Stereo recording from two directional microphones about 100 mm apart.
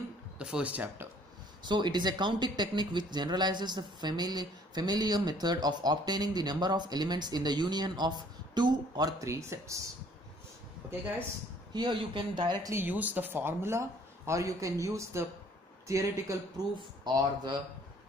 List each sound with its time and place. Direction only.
0.4 s speech: 10° right (ahead or behind)
1.6 s speech: 50° right (ahead or behind); by 9.8 s 30° right (ahead or behind)
11.7 s speech: 55° right (ahead or behind)
12.7 s speech: 20° right (ahead or behind); by 17.6 s 40° right (ahead or behind)